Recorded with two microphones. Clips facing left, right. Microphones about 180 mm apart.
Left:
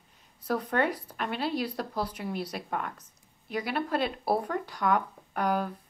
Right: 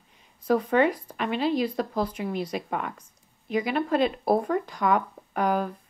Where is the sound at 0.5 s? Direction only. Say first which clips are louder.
Right 6 dB; 10° right (ahead or behind); by 2.1 s 5° left (ahead or behind).